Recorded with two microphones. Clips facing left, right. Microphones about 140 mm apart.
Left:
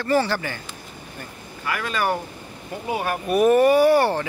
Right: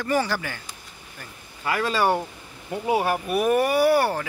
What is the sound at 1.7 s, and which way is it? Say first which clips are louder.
Speech: right 2 dB; 25° right (ahead or behind).